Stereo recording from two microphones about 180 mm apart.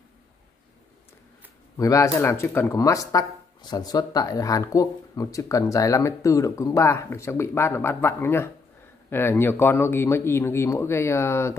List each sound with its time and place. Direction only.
1.8 s speech: 15° left (ahead or behind)